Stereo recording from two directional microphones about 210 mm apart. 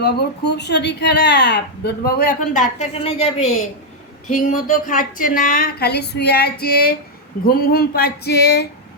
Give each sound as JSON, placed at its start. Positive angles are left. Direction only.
{"t": 0.0, "sound": "a woman's voice", "side_deg": 50}
{"t": 4.3, "sound": "a woman's voice", "side_deg": 40}